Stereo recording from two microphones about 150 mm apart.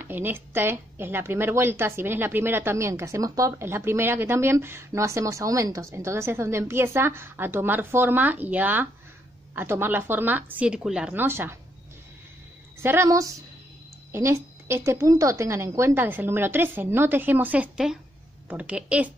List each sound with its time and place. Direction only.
0.0 s speech: 15° right (ahead or behind)
12.8 s a woman's voice: 20° right (ahead or behind)